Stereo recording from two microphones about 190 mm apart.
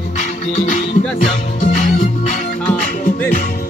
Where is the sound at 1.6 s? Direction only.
40° left (ahead or behind).